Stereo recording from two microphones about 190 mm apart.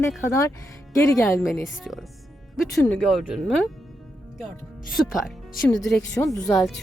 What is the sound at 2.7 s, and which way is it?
Speech, 15° left (ahead or behind).